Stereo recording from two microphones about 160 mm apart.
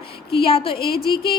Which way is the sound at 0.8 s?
75° left (ahead or behind).